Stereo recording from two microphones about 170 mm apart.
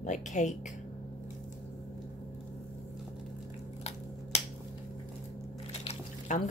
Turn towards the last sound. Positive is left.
turn(degrees=40)  # may be behind; listen again after turning